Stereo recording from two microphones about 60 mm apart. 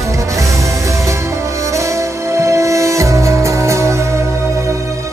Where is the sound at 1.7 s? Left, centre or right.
Right.